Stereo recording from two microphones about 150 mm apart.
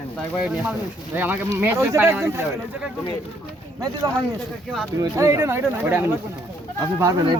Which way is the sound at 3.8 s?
25° right (ahead or behind).